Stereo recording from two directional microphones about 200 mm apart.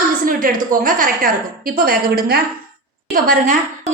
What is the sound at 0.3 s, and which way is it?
A woman's voice, 45° right (ahead or behind).